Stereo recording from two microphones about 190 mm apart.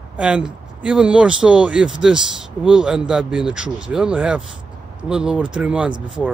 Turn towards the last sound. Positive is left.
turn(degrees=-25)  # may be behind; listen again after turning